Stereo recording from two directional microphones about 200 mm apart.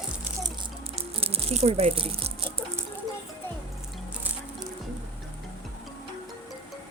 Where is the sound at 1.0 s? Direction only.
30° right (ahead or behind).